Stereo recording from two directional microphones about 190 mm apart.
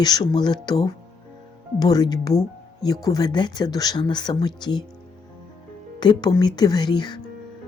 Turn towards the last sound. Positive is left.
turn(degrees=25)  # may be behind; listen again after turning